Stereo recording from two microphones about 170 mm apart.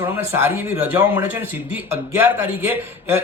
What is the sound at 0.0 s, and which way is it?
A man's voice, 15° right (ahead or behind).